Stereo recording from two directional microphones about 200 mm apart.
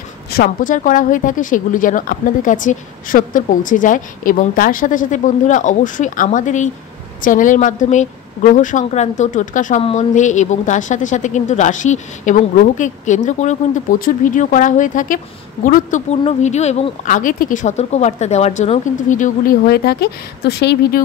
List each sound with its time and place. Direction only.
0.3 s speech: 45° left (ahead or behind)